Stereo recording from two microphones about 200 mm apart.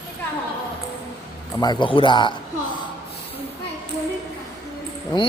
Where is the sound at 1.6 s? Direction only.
20° left (ahead or behind).